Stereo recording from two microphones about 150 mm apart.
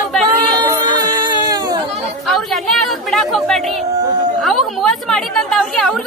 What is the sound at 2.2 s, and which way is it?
Chatter, centre (ahead or behind).